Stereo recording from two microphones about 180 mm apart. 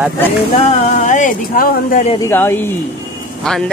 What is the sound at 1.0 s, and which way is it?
Speech, 45° left (ahead or behind).